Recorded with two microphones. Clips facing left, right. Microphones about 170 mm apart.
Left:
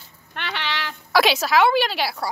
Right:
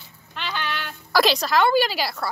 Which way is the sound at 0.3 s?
65° left (ahead or behind).